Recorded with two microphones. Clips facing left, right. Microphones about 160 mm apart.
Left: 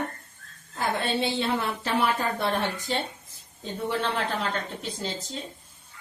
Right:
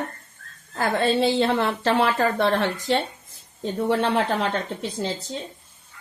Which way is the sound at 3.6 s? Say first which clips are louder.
Right 7 dB; 55° right (ahead or behind).